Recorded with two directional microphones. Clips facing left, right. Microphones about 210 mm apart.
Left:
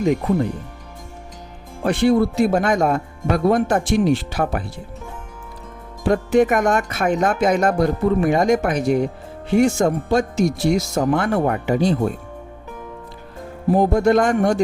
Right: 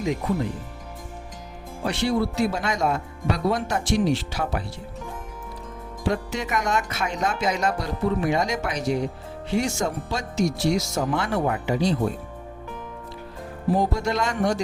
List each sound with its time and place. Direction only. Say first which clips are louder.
1.8 s speech: left 7 dB; 55° left (ahead or behind)
6.0 s speech: left 11 dB; 50° left (ahead or behind)
13.7 s speech: left 10 dB; 55° left (ahead or behind)